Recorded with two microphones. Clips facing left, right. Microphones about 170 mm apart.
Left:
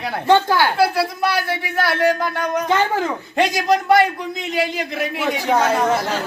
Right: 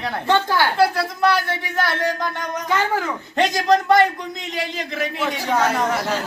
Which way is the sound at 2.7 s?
25° left (ahead or behind).